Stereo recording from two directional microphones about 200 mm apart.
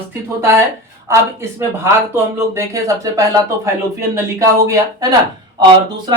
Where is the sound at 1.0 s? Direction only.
15° right (ahead or behind).